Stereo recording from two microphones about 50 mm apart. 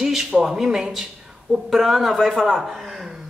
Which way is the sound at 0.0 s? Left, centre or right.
Centre.